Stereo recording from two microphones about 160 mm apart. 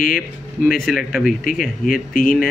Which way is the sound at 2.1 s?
60° left (ahead or behind).